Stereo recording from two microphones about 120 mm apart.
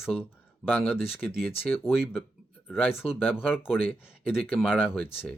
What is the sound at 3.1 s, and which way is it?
Speech, 15° left (ahead or behind).